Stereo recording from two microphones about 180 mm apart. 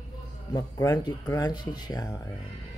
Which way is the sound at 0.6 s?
20° left (ahead or behind).